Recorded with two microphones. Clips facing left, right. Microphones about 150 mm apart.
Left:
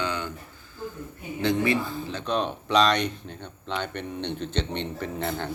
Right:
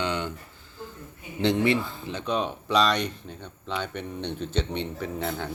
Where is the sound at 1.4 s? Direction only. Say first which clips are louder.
Right 1 dB; 30° right (ahead or behind).